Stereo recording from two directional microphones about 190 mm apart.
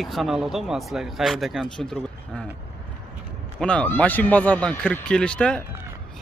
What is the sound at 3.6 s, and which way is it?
Speech, 5° left (ahead or behind).